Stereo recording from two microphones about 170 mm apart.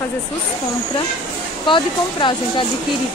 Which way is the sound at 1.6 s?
30° left (ahead or behind).